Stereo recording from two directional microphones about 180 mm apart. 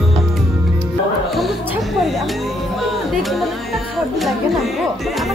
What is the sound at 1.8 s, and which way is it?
Music, centre (ahead or behind).